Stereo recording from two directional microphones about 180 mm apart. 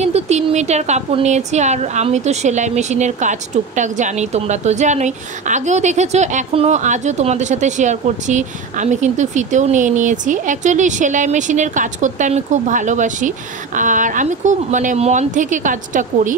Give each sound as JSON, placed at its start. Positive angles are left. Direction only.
{"t": 0.0, "sound": "a woman's voice", "side_deg": -35}